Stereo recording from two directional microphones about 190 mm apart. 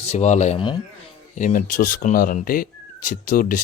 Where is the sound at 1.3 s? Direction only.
45° left (ahead or behind).